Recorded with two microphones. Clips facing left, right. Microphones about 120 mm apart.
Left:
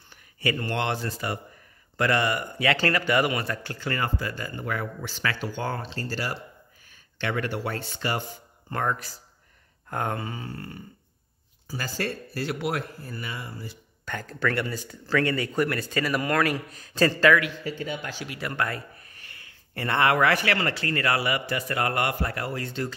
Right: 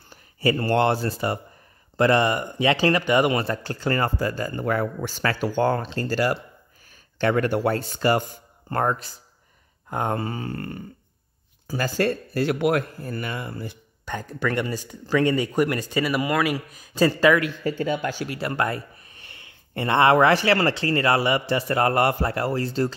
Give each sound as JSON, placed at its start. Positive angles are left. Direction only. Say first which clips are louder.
{"t": 0.1, "sound": "speech", "louder": "right 6 dB", "side_deg": -35}
{"t": 8.8, "sound": "speech", "louder": "right 3 dB", "side_deg": -25}
{"t": 9.8, "sound": "a sound", "louder": "right 3 dB", "side_deg": -20}
{"t": 10.1, "sound": "speech", "louder": "right 6 dB", "side_deg": -45}
{"t": 14.0, "sound": "speech", "louder": "right 2 dB", "side_deg": -15}
{"t": 17.4, "sound": "speech", "louder": "right 5 dB", "side_deg": -45}
{"t": 18.4, "sound": "speech", "louder": "right 3 dB", "side_deg": -30}